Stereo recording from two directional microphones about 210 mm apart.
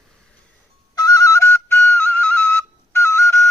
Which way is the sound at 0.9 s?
15° left (ahead or behind).